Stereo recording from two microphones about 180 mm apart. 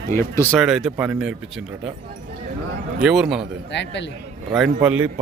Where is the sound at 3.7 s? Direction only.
80° left.